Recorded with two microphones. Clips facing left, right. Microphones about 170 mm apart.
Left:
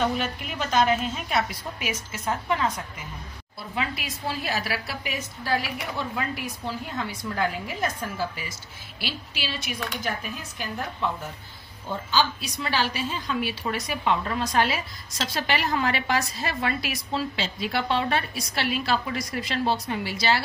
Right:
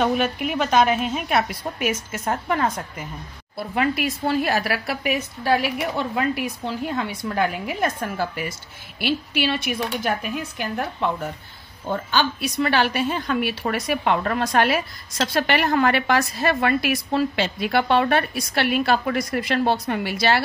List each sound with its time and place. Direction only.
0.0 s a woman's voice: 60° right (ahead or behind)